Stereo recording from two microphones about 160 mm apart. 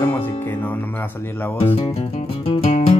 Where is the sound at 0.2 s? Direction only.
10° left (ahead or behind).